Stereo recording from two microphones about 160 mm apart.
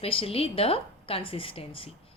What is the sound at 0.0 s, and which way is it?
A woman's voice, 35° left (ahead or behind).